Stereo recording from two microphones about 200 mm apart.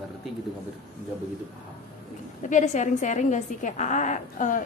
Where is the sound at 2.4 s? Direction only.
40° left (ahead or behind).